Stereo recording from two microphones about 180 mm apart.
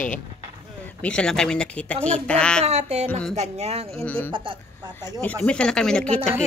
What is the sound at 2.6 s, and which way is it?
Speech, 35° right (ahead or behind).